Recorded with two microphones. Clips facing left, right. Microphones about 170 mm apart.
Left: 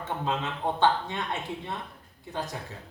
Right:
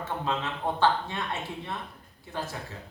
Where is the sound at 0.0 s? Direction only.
20° left (ahead or behind).